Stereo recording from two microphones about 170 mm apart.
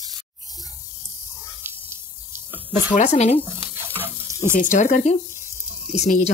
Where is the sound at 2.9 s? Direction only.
40° left (ahead or behind).